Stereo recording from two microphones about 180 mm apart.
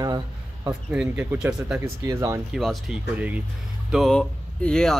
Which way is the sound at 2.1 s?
15° right (ahead or behind).